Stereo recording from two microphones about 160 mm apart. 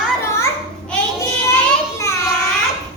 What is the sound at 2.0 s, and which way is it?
Child singing, 20° left (ahead or behind).